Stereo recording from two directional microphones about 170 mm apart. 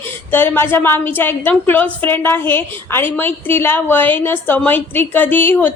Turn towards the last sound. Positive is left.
turn(degrees=10)  # may be behind; listen again after turning